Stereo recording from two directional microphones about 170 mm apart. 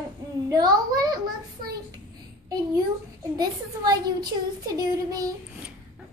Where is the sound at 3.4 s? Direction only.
20° right (ahead or behind).